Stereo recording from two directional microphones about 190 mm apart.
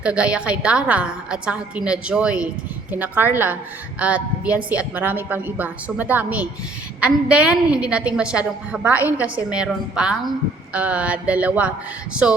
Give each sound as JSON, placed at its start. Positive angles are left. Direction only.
{"t": 0.0, "sound": "a woman's voice", "side_deg": -5}